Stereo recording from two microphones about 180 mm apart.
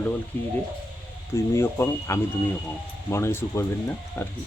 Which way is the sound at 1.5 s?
15° left (ahead or behind).